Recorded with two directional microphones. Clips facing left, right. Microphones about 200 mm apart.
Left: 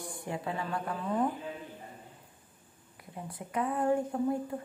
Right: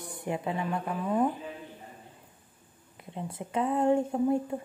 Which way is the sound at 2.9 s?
25° right (ahead or behind).